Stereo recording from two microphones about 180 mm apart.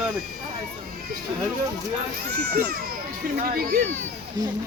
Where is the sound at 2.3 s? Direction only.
60° right (ahead or behind).